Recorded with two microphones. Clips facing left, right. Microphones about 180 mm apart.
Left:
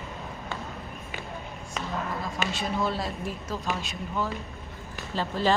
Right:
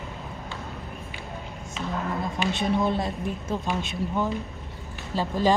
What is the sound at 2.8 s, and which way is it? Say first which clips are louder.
Speech: right 3 dB; 20° right (ahead or behind).